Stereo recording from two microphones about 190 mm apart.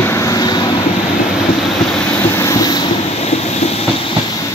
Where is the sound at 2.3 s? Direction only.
20° left (ahead or behind).